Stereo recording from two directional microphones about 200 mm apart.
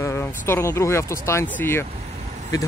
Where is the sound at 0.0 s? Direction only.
10° left (ahead or behind).